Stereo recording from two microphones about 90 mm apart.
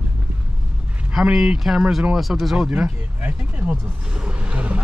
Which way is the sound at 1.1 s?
10° right (ahead or behind).